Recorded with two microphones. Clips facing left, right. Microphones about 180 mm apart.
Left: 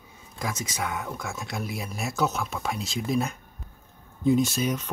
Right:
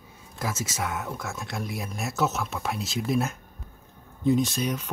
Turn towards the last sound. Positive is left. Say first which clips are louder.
# left 1 dB
turn(degrees=0)  # may be behind; listen again after turning